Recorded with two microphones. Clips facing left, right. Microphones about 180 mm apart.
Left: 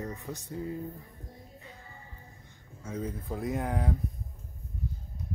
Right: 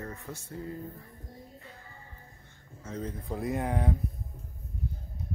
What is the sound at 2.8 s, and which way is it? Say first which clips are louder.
Speech: left 1 dB; 10° left (ahead or behind).